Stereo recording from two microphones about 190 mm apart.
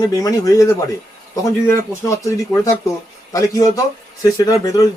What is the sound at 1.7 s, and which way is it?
Speech, 15° left (ahead or behind).